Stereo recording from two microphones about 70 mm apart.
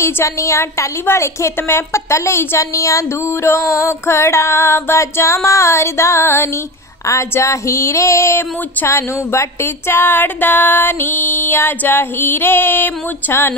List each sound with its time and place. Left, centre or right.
0.0 s a woman's voice: left